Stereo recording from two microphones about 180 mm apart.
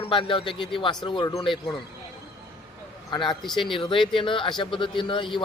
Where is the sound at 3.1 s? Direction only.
25° left (ahead or behind).